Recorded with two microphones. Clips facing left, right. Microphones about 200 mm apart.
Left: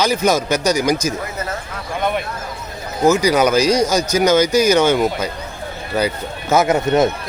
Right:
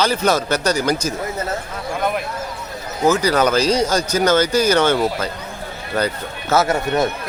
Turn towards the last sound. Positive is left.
turn(degrees=20)  # may be behind; listen again after turning